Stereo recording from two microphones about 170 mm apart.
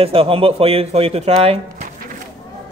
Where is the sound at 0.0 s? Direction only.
35° right (ahead or behind).